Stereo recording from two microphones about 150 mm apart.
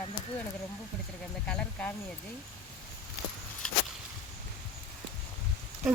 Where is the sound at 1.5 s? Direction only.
5° left (ahead or behind).